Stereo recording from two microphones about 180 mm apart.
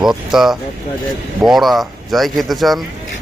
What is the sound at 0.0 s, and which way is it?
Speech, centre (ahead or behind).